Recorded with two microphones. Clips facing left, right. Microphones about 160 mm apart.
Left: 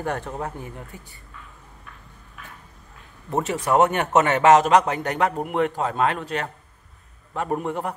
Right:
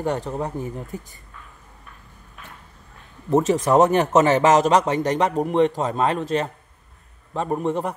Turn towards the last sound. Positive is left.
turn(degrees=0)  # may be behind; listen again after turning